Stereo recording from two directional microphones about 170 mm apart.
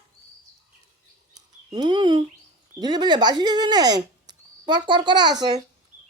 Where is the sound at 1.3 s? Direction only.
25° right (ahead or behind).